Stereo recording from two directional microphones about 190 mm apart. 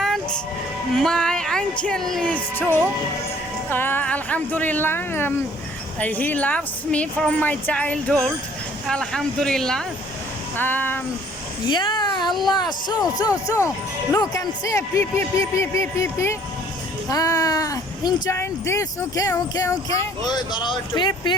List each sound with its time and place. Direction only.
0.0 s sheep: centre (ahead or behind)
0.9 s a woman's voice: 5° left (ahead or behind)
11.6 s a sound: 25° left (ahead or behind)
12.3 s speech: centre (ahead or behind)
12.5 s a woman's voice: 20° left (ahead or behind)